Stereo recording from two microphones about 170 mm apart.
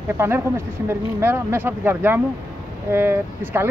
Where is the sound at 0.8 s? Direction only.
15° right (ahead or behind).